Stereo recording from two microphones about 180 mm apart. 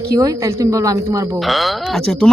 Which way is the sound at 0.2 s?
20° right (ahead or behind).